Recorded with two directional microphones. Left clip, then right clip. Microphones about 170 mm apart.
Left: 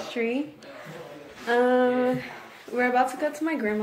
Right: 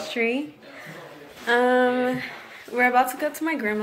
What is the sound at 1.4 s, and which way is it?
A woman's voice, centre (ahead or behind).